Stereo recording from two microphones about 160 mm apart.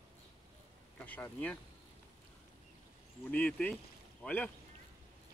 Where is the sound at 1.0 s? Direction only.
10° left (ahead or behind).